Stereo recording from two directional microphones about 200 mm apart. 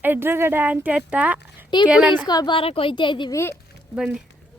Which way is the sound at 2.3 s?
20° left (ahead or behind).